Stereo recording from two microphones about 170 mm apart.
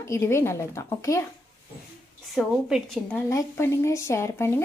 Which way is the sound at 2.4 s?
Centre (ahead or behind).